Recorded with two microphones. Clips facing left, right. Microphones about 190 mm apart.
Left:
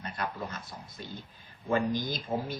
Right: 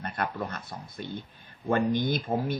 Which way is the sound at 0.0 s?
55° right (ahead or behind).